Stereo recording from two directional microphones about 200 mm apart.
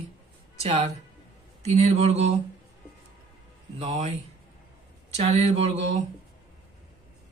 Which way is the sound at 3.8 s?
35° right (ahead or behind).